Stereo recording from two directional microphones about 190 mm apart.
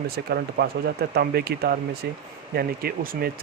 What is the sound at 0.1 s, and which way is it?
Speech, 55° right (ahead or behind).